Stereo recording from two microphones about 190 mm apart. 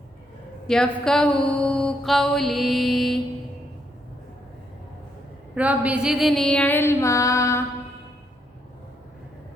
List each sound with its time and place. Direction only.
0.7 s mantra: 5° left (ahead or behind)
5.5 s mantra: 5° right (ahead or behind); by 7.6 s 15° left (ahead or behind)